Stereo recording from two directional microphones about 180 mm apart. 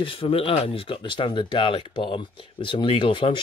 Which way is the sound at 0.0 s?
30° left (ahead or behind).